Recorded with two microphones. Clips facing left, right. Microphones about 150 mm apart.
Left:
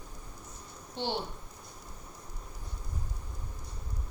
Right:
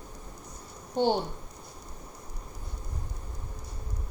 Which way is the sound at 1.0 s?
45° right (ahead or behind).